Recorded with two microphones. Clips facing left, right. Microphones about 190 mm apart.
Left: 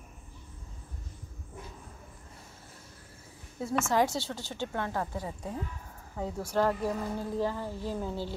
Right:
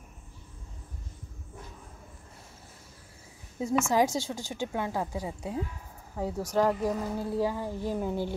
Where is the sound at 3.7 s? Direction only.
10° right (ahead or behind).